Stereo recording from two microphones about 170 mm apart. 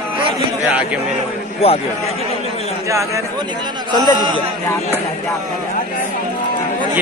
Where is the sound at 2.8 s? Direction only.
20° right (ahead or behind).